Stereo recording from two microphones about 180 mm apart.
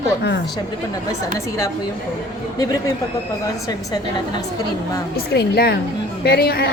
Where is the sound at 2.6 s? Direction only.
20° left (ahead or behind).